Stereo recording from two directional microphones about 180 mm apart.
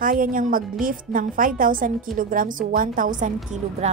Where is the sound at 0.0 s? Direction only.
50° right (ahead or behind).